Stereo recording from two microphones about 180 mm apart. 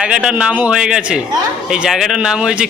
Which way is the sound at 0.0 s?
5° right (ahead or behind).